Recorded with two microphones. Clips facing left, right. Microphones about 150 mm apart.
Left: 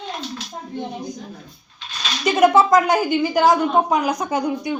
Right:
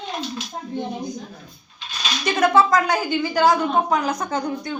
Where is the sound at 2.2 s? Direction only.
20° left (ahead or behind).